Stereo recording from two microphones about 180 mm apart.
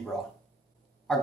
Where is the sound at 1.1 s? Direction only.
Centre (ahead or behind).